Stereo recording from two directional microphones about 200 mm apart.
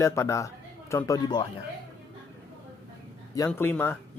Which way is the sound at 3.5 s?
10° left (ahead or behind).